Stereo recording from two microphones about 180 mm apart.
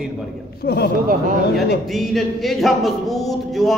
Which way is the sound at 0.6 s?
65° left (ahead or behind).